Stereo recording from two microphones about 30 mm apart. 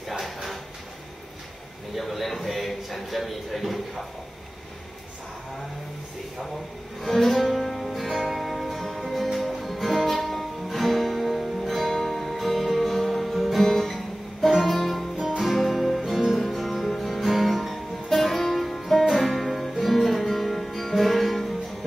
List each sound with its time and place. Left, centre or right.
2.0 s a man's voice: centre
7.1 s music: centre
12.8 s music: centre
15.2 s music: centre